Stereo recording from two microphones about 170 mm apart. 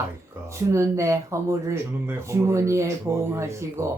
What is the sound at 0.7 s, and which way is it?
Speech, 15° right (ahead or behind).